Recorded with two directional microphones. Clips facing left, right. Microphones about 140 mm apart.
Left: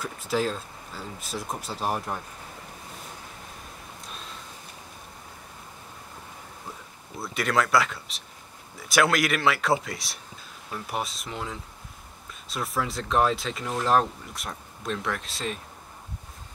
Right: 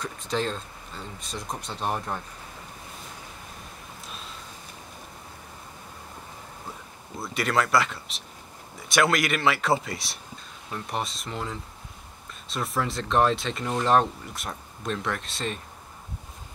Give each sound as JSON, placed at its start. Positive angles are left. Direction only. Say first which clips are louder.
{"t": 0.0, "sound": "speech", "louder": "left 2 dB", "side_deg": 5}
{"t": 7.2, "sound": "speech", "louder": "even", "side_deg": 0}